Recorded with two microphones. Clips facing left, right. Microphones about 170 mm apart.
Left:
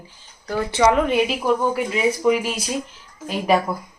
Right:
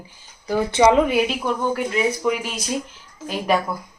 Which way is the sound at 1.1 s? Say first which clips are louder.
Left 2 dB; centre (ahead or behind).